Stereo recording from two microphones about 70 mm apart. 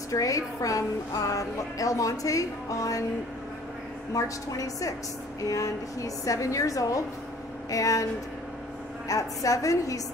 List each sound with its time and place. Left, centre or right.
0.1 s speech: left
4.1 s a woman's voice: left